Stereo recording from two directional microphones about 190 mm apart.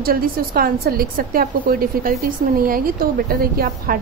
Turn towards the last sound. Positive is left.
turn(degrees=-50)  # may be behind; listen again after turning